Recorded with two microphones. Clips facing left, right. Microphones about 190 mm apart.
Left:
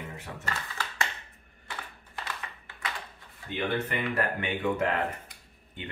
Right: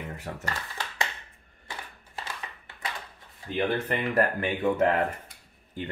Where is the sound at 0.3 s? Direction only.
40° right (ahead or behind).